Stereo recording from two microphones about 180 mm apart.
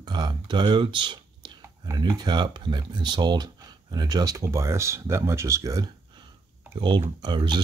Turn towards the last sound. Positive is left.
turn(degrees=-25)  # may be behind; listen again after turning